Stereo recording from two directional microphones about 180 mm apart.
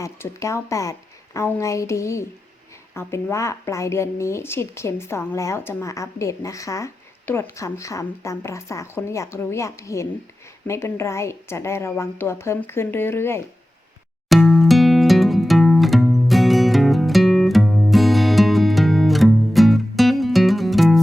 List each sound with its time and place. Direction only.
0.0 s a woman's voice: 15° left (ahead or behind)
14.3 s music: centre (ahead or behind)